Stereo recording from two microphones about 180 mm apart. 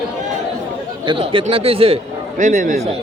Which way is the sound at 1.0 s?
30° right (ahead or behind).